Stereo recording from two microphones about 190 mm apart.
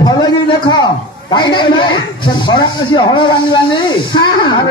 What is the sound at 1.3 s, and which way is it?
Speech, 25° left (ahead or behind).